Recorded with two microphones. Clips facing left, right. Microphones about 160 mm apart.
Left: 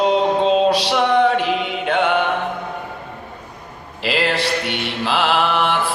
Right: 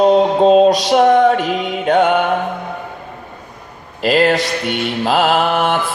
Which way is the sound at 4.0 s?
45° right (ahead or behind).